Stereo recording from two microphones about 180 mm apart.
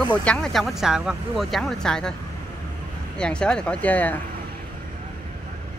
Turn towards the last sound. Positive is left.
turn(degrees=10)  # may be behind; listen again after turning